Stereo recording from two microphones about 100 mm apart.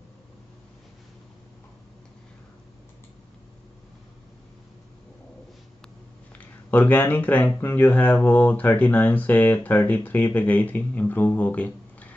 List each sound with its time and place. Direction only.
6.3 s speech: 15° left (ahead or behind)